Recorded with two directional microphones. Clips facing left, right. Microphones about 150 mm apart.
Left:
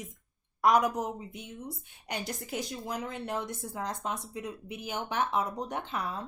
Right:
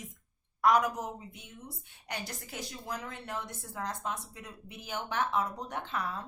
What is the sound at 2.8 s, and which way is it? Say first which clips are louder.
Speech: left 4 dB; 20° left (ahead or behind).